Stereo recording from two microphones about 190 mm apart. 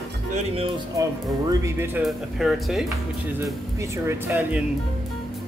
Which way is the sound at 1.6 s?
10° right (ahead or behind).